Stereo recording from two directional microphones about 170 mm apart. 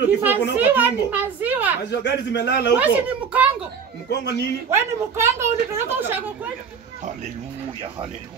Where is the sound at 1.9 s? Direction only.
90° left.